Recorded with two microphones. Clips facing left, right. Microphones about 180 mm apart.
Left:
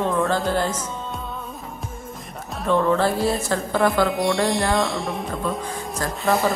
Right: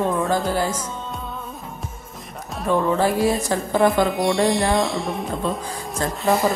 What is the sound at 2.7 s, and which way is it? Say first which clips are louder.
A woman's voice: even; 10° right (ahead or behind).